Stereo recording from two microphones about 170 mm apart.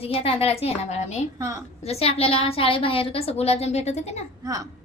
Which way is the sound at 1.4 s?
15° right (ahead or behind).